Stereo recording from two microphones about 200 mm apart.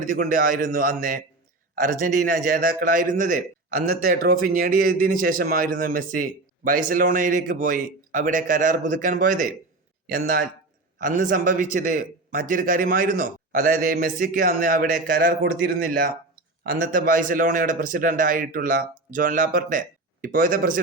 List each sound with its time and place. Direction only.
0.0 s a man's voice: 45° right (ahead or behind)